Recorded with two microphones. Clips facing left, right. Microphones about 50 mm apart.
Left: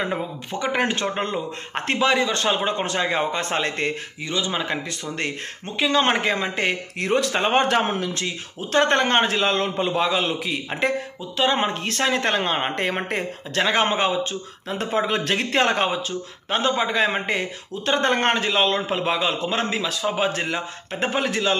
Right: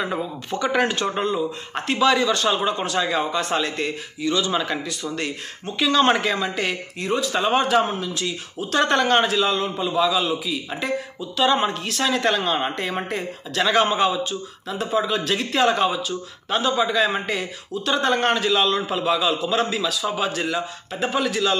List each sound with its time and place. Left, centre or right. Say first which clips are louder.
0.0 s speech: even; left
4.3 s speech: right 3 dB; left
4.8 s speech: right 1 dB; left
5.8 s speech: right 2 dB; left
7.0 s speech: left 2 dB; left
7.3 s a man's voice: right 3 dB; left
8.2 s speech: right 1 dB; left
9.4 s a man's voice: even; left
11.1 s speech: right 4 dB; left
13.6 s speech: right 1 dB; left
14.7 s a man's voice: even; left
15.9 s speech: even; left